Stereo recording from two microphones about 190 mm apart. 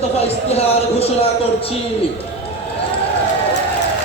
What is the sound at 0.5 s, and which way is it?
Speech, 30° left (ahead or behind).